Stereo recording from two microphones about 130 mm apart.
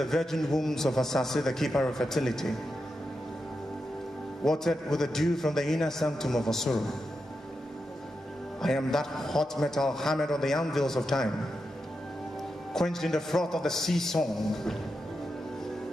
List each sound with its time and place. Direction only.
0.0 s a man's voice: 5° left (ahead or behind)
4.5 s a man's voice: 5° left (ahead or behind)
8.5 s a man's voice: 5° left (ahead or behind)
12.7 s a man's voice: 5° left (ahead or behind)